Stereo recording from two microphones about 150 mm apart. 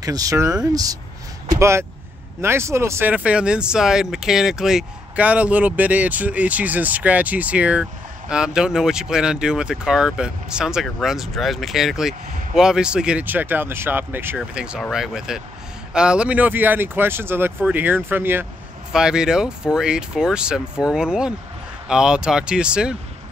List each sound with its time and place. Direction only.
0.0 s speech: 25° right (ahead or behind)
1.6 s speech: 20° right (ahead or behind)